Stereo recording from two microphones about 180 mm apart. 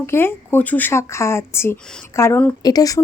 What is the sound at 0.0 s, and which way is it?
Speech, 15° left (ahead or behind).